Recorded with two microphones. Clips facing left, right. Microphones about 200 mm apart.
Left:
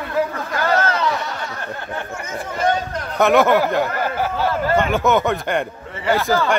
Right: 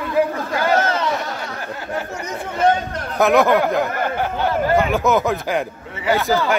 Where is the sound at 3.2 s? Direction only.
Centre (ahead or behind).